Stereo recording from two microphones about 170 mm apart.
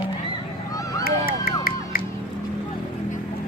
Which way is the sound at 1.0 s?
60° left (ahead or behind).